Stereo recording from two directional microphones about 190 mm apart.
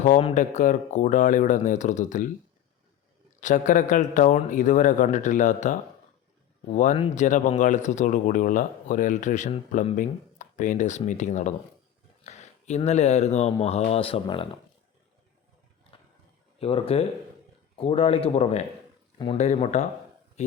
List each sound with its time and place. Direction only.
0.2 s speech: 35° left (ahead or behind)
3.4 s speech: 45° left (ahead or behind)
16.6 s speech: 30° left (ahead or behind)